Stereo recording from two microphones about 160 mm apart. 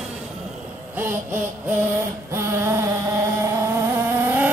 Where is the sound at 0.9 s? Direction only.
15° right (ahead or behind).